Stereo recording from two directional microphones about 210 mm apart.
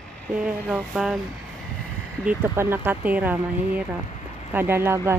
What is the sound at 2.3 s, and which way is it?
Speech, 10° right (ahead or behind).